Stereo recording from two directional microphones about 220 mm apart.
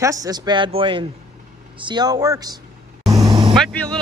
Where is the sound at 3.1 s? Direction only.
20° right (ahead or behind).